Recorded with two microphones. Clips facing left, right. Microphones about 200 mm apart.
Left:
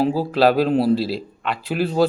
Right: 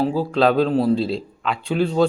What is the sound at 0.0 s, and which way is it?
Speech, 10° left (ahead or behind).